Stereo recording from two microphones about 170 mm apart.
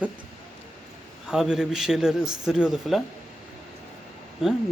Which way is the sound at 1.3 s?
5° right (ahead or behind).